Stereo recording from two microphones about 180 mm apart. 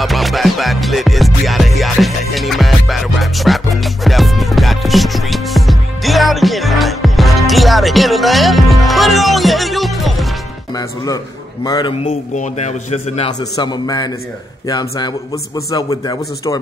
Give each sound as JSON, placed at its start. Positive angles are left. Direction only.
{"t": 0.0, "sound": "music", "side_deg": 0}
{"t": 11.6, "sound": "a man's voice", "side_deg": 20}
{"t": 12.0, "sound": "a man's voice", "side_deg": 40}
{"t": 13.4, "sound": "a man's voice", "side_deg": 20}